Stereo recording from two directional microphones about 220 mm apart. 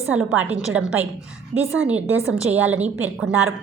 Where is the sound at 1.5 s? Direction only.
30° right (ahead or behind).